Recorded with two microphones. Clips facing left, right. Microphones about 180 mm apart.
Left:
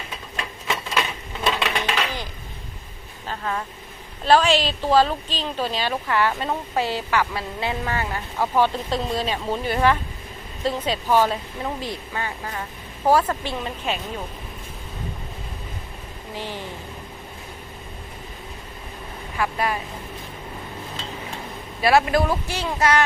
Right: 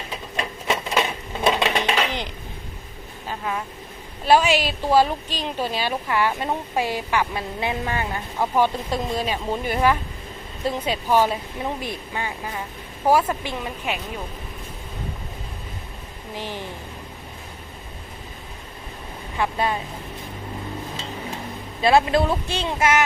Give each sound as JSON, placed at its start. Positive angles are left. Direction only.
{"t": 0.3, "sound": "a sound", "side_deg": -25}
{"t": 3.2, "sound": "vehicle", "side_deg": -10}
{"t": 4.3, "sound": "a woman's voice", "side_deg": -10}
{"t": 16.3, "sound": "a woman's voice", "side_deg": -15}
{"t": 19.4, "sound": "speech", "side_deg": -25}
{"t": 21.8, "sound": "speech", "side_deg": -25}